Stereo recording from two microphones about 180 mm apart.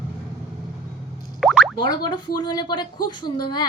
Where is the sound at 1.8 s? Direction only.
25° left (ahead or behind).